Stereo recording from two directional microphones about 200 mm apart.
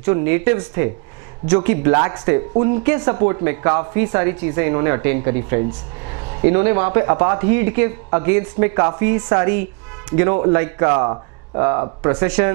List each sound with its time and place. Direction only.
0.0 s speech: 15° right (ahead or behind)
12.3 s speech: 10° right (ahead or behind)